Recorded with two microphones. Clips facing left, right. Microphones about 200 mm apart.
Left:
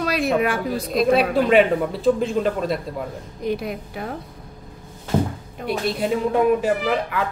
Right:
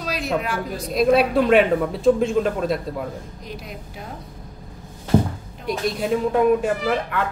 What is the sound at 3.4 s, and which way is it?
Speech, 60° left (ahead or behind).